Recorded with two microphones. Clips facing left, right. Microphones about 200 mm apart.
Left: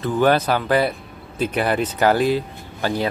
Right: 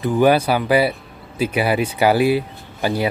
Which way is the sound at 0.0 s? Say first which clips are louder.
Right 2 dB; 15° right (ahead or behind).